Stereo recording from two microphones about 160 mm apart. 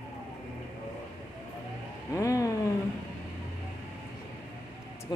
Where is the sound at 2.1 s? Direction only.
20° left (ahead or behind).